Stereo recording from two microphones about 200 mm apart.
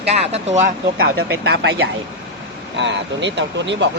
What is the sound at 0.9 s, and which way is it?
Speech, 50° right (ahead or behind).